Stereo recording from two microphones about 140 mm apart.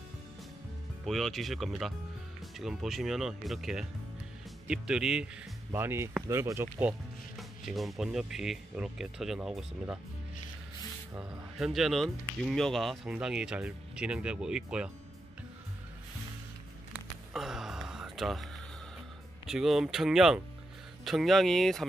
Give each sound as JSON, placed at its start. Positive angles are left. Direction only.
{"t": 1.0, "sound": "speech", "side_deg": 0}
{"t": 5.7, "sound": "speech", "side_deg": -15}
{"t": 7.3, "sound": "speech", "side_deg": 0}
{"t": 11.5, "sound": "speech", "side_deg": 0}
{"t": 17.3, "sound": "a sound", "side_deg": -5}
{"t": 19.4, "sound": "speech", "side_deg": 0}